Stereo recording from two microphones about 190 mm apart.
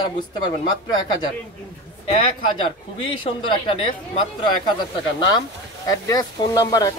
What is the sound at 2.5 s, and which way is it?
Speech, 25° left (ahead or behind).